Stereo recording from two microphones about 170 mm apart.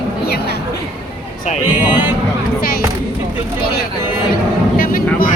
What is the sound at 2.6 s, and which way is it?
Mantra, 60° left (ahead or behind).